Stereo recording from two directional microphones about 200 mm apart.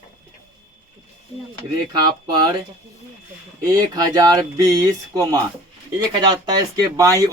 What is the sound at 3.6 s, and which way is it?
Speech, 20° right (ahead or behind).